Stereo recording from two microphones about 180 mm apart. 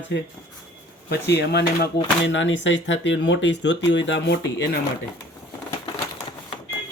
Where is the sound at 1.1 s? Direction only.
65° left (ahead or behind).